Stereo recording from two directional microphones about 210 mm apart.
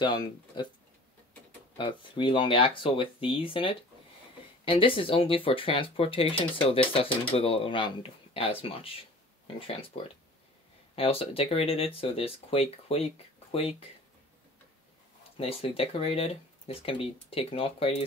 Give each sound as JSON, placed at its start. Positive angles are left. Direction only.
{"t": 0.0, "sound": "speech", "side_deg": 20}
{"t": 1.8, "sound": "speech", "side_deg": 25}
{"t": 15.3, "sound": "speech", "side_deg": 25}